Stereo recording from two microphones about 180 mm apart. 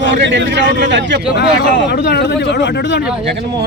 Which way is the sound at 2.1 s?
75° left (ahead or behind).